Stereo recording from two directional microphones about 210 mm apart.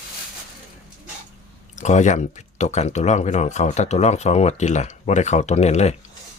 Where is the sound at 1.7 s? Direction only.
35° left (ahead or behind).